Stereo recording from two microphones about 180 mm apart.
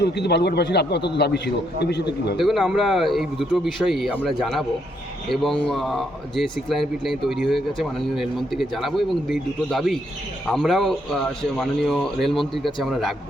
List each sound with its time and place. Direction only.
0.0 s speech: 65° left (ahead or behind)
2.4 s speech: centre (ahead or behind)